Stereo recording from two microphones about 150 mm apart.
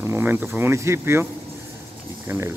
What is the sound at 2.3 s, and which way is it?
Speech, 15° right (ahead or behind).